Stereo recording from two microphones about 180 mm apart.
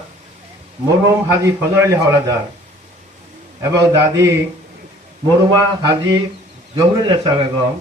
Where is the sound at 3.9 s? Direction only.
15° right (ahead or behind).